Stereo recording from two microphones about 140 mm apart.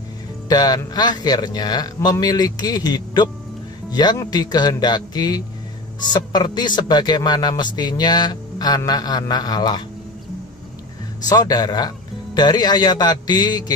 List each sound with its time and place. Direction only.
0.5 s speech: 30° left (ahead or behind)
11.2 s speech: 30° left (ahead or behind)